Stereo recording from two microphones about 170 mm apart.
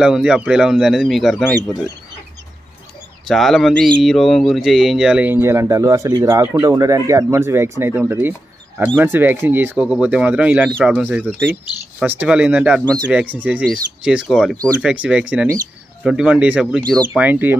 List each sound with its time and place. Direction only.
0.0 s speech: 5° right (ahead or behind)
1.4 s speech: 20° left (ahead or behind)
3.3 s speech: centre (ahead or behind)